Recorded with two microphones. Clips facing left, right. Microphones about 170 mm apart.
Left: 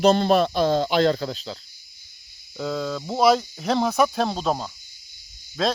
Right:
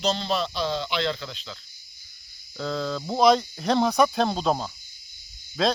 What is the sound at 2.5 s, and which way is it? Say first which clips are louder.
Speech: left 2 dB; 10° left (ahead or behind).